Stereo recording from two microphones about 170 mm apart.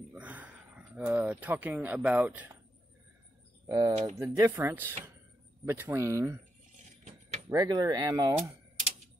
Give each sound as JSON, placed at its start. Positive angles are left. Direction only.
{"t": 0.1, "sound": "speech", "side_deg": -10}
{"t": 3.6, "sound": "speech", "side_deg": -20}
{"t": 7.4, "sound": "speech", "side_deg": -20}